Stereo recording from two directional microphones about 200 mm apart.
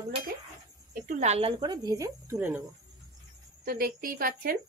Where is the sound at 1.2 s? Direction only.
30° right (ahead or behind); by 2.6 s 15° right (ahead or behind).